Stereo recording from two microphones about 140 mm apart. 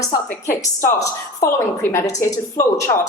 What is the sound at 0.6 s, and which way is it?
A woman's voice, 25° left (ahead or behind).